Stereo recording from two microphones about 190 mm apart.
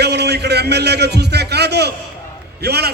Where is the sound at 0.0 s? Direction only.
60° right (ahead or behind).